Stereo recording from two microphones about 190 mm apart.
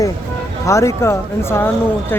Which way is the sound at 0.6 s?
15° left (ahead or behind).